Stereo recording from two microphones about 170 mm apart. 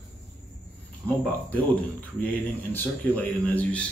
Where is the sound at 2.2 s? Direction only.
10° left (ahead or behind).